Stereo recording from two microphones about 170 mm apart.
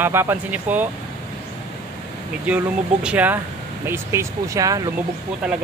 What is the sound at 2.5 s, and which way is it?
Speech, 10° right (ahead or behind).